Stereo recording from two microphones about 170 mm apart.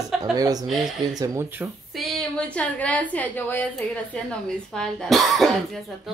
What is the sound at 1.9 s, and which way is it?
A woman's voice, centre (ahead or behind).